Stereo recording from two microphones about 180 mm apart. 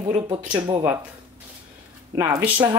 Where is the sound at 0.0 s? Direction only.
25° right (ahead or behind).